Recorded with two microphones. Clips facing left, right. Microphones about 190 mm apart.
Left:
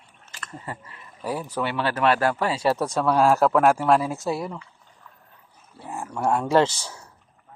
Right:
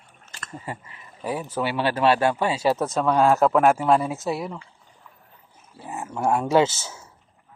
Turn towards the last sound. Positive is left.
turn(degrees=-5)  # may be behind; listen again after turning